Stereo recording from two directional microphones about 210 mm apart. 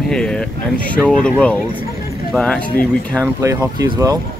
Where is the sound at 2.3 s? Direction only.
5° left (ahead or behind).